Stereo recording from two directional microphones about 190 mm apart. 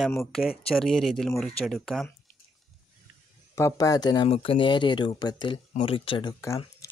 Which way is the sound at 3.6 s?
15° left (ahead or behind).